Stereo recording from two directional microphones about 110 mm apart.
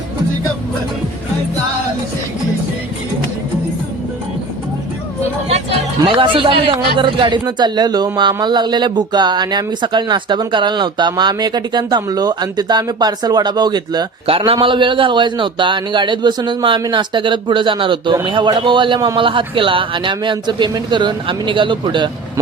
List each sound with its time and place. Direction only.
6.1 s speech: 50° right (ahead or behind)
14.3 s a man's voice: 55° right (ahead or behind)
18.9 s speech: 35° right (ahead or behind)
19.2 s a man's voice: 50° right (ahead or behind)